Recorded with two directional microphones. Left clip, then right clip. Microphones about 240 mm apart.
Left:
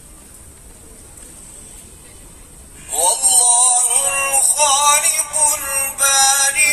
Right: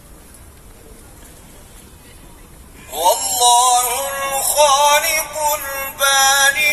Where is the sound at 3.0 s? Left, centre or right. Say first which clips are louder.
Right 4 dB; left.